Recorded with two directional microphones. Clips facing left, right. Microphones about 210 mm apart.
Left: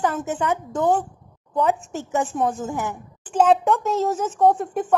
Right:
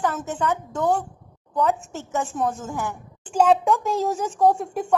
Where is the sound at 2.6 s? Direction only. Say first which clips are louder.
Left 2 dB; 20° left (ahead or behind).